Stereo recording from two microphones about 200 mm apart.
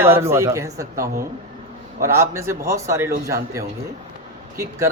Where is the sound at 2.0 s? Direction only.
15° right (ahead or behind).